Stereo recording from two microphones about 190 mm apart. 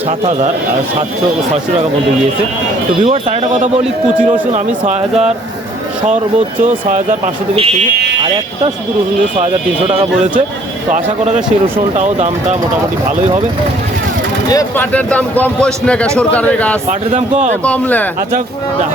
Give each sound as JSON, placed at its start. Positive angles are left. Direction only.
{"t": 3.0, "sound": "speech", "side_deg": -35}
{"t": 9.4, "sound": "speech", "side_deg": -35}
{"t": 11.9, "sound": "speech", "side_deg": -40}
{"t": 14.5, "sound": "a man's voice", "side_deg": 15}
{"t": 17.1, "sound": "speech", "side_deg": -40}
{"t": 17.6, "sound": "a man's voice", "side_deg": 10}